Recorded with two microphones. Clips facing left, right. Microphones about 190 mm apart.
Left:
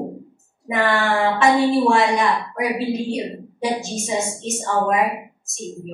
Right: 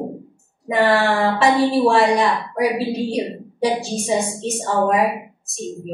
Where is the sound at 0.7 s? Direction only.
35° right (ahead or behind).